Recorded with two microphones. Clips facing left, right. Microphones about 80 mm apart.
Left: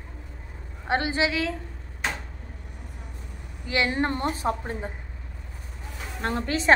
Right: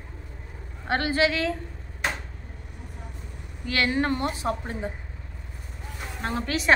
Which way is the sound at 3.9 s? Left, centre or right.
Left.